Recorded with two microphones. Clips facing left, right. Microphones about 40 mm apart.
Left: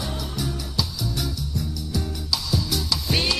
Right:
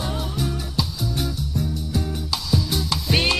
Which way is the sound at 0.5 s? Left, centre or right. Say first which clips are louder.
Right 2 dB; right.